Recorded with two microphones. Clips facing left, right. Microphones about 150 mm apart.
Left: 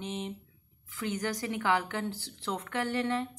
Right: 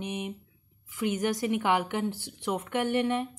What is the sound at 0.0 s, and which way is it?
Speech, 15° right (ahead or behind).